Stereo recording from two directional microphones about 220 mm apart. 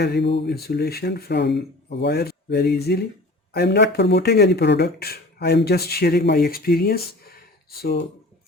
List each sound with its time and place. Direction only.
0.0 s speech: 50° left (ahead or behind)